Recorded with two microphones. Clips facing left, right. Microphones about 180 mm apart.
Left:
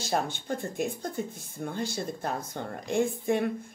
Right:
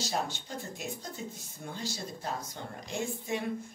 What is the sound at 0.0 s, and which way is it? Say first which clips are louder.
A woman's voice: left 4 dB; 55° left (ahead or behind).